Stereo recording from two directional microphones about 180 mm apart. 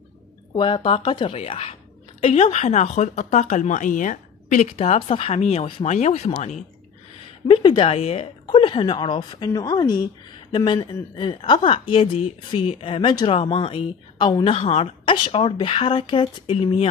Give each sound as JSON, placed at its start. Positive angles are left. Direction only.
{"t": 0.6, "sound": "a woman's voice", "side_deg": 25}